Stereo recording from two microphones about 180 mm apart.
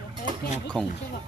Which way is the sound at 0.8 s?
5° left (ahead or behind).